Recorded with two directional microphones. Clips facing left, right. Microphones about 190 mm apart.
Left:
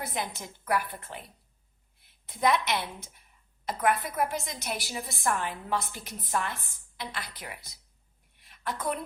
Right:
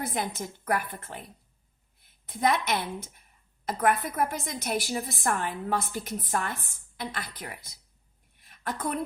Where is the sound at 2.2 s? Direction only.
50° right (ahead or behind).